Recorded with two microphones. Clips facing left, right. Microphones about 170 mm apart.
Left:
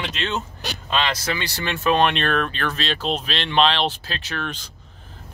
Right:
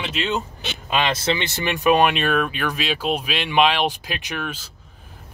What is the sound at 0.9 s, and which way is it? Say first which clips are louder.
Speech: right 3 dB; 25° right (ahead or behind).